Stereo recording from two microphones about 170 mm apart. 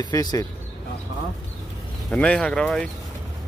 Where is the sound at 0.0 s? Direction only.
25° left (ahead or behind).